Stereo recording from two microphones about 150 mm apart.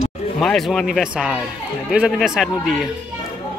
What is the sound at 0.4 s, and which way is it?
Speech, 5° left (ahead or behind).